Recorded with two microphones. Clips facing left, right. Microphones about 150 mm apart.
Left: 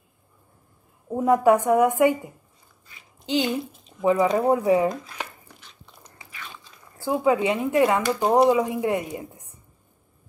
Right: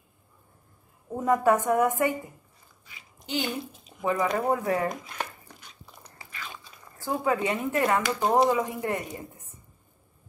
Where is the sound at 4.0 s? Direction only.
15° left (ahead or behind).